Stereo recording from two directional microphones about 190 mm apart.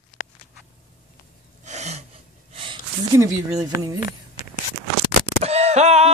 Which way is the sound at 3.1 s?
15° right (ahead or behind).